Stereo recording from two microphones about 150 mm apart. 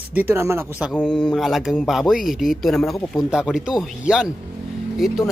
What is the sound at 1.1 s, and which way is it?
Speech, centre (ahead or behind).